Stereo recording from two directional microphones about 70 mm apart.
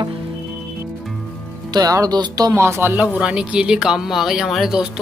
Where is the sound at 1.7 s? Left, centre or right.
Right.